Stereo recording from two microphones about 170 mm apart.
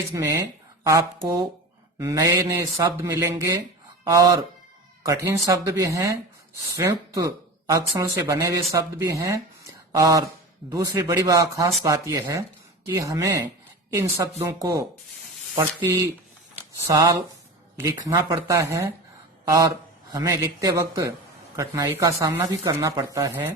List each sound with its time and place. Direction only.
0.1 s speech: 20° right (ahead or behind)
20.1 s speech: 20° right (ahead or behind)